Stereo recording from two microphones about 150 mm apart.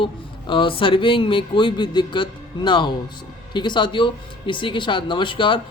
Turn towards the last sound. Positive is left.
turn(degrees=35)  # may be behind; listen again after turning